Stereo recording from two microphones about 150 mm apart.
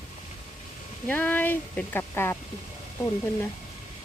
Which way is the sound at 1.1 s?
10° left (ahead or behind).